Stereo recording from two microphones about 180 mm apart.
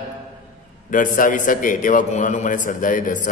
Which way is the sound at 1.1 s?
45° left (ahead or behind).